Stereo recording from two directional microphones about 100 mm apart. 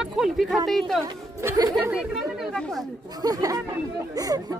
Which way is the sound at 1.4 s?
30° right (ahead or behind).